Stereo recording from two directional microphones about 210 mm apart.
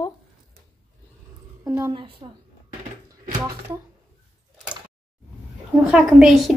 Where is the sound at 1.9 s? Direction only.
25° right (ahead or behind).